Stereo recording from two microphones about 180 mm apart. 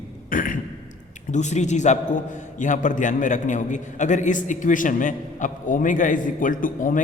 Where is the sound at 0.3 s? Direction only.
50° left (ahead or behind).